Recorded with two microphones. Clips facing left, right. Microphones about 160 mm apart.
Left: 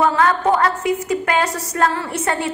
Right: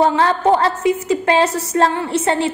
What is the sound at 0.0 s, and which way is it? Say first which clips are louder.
A woman's voice: right 2 dB; 30° right (ahead or behind).